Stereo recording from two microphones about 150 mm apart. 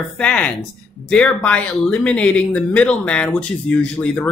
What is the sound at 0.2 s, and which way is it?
A woman's voice, 5° left (ahead or behind).